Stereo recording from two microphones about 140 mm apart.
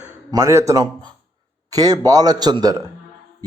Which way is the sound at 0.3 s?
20° right (ahead or behind).